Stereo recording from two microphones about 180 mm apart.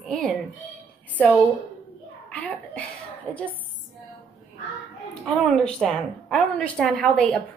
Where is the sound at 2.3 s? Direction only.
5° left (ahead or behind).